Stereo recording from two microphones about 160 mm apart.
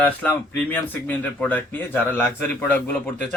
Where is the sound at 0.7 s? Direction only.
10° left (ahead or behind).